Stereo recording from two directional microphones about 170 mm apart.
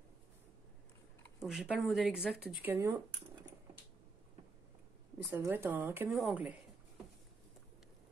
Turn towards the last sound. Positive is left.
turn(degrees=-10)  # may be behind; listen again after turning